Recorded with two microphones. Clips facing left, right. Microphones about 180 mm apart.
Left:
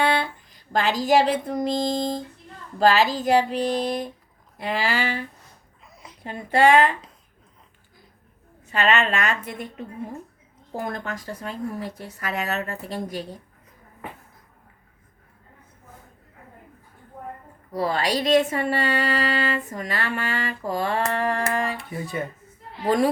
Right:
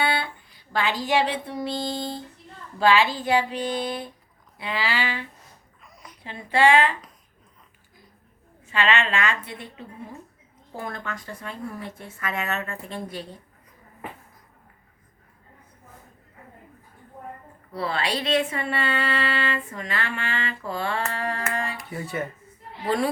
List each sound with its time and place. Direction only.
0.0 s a sound: 40° left (ahead or behind)
0.7 s a woman's voice: 40° left (ahead or behind)
5.8 s a sound: 25° left (ahead or behind)
6.2 s a woman's voice: 45° left (ahead or behind)
8.6 s a woman's voice: 40° left (ahead or behind)
17.7 s a woman's voice: 40° left (ahead or behind)
21.8 s speech: 15° left (ahead or behind)
22.8 s a woman's voice: 40° left (ahead or behind)